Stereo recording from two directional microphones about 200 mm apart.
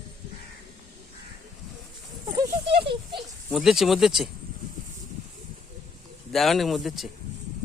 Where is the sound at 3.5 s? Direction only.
Centre (ahead or behind).